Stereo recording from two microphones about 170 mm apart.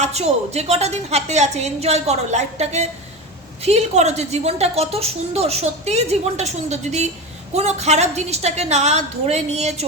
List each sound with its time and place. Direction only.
0.0 s a woman's voice: 40° right (ahead or behind)